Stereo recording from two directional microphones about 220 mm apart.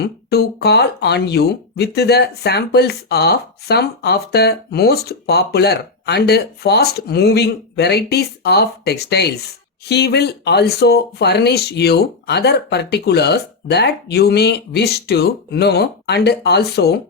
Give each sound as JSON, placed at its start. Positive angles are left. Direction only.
{"t": 0.0, "sound": "speech", "side_deg": 45}